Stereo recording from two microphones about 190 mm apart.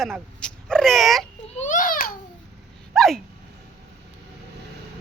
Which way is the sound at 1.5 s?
40° left (ahead or behind).